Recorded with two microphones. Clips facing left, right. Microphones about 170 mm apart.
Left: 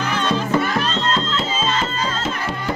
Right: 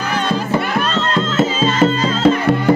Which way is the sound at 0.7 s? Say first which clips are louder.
Right 3 dB; 55° right (ahead or behind).